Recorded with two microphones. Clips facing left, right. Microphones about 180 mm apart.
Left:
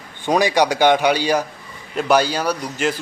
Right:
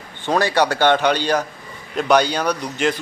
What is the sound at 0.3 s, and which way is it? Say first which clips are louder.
Speech: left 1 dB; 15° left (ahead or behind).